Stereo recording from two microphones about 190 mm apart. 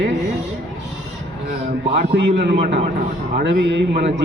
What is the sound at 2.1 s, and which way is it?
A man's voice, 65° right (ahead or behind).